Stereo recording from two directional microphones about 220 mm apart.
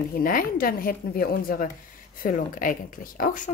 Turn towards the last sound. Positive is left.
turn(degrees=40)  # may be behind; listen again after turning